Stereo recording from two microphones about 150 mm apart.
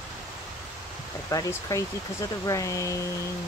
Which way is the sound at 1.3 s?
20° left (ahead or behind).